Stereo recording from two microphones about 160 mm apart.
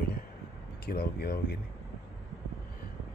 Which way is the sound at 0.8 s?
80° left.